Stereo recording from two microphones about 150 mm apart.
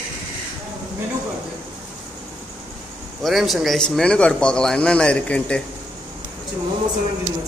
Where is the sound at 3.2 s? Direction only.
Centre (ahead or behind).